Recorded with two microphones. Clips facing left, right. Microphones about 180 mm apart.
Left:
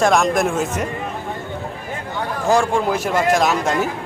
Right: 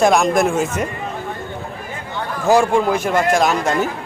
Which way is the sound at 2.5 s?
5° right (ahead or behind).